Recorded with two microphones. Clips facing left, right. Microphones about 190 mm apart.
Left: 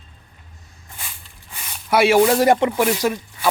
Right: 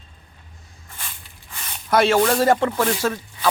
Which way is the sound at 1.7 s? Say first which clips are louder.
Left 2 dB; 10° left (ahead or behind).